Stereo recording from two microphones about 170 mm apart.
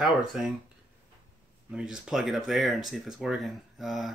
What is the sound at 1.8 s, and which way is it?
Speech, 5° right (ahead or behind).